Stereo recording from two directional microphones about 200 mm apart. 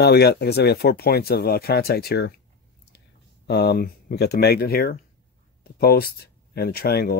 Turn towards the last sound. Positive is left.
turn(degrees=50)  # may be behind; listen again after turning